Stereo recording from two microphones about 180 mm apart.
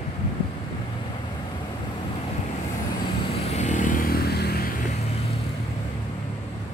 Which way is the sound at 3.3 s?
40° left (ahead or behind).